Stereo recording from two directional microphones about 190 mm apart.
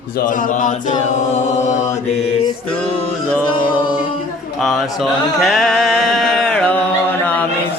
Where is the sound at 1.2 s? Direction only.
40° left (ahead or behind).